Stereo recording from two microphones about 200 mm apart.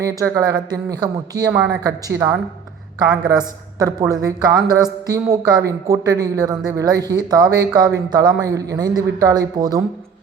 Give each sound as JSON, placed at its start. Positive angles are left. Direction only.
{"t": 0.0, "sound": "speech", "side_deg": -15}
{"t": 1.5, "sound": "speech", "side_deg": -5}
{"t": 3.8, "sound": "speech", "side_deg": -15}